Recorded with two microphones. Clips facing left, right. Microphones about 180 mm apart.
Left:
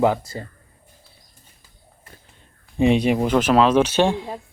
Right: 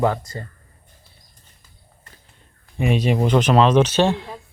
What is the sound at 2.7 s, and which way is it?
Speech, 20° left (ahead or behind).